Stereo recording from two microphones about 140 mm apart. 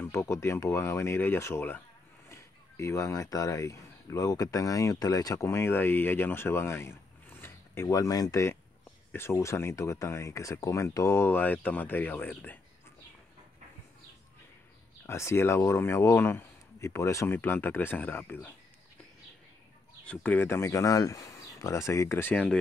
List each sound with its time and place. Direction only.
0.0 s speech: 20° left (ahead or behind)
15.0 s speech: 20° left (ahead or behind)
20.1 s speech: 15° left (ahead or behind)